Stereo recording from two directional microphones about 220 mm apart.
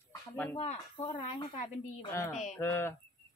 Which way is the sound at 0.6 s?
25° left (ahead or behind).